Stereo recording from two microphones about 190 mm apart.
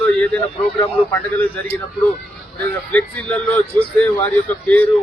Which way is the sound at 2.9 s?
10° left (ahead or behind).